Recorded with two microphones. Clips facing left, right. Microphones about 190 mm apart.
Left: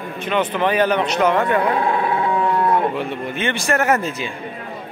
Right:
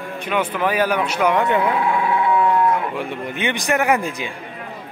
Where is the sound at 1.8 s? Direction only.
40° left (ahead or behind).